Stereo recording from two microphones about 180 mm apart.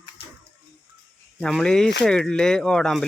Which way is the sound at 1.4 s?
5° left (ahead or behind).